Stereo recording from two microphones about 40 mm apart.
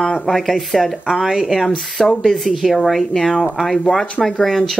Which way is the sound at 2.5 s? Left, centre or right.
Centre.